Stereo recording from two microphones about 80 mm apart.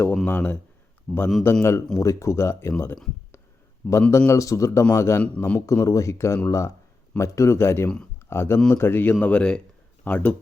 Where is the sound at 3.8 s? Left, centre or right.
Centre.